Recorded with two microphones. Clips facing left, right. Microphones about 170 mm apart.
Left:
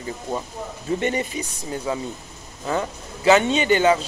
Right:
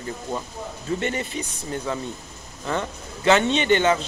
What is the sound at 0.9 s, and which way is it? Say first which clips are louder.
Speech: left 4 dB; 15° left (ahead or behind).